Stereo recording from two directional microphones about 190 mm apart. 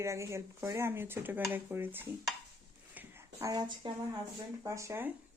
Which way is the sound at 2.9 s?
15° right (ahead or behind).